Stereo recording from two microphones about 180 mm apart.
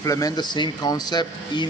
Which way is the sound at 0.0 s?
20° left (ahead or behind).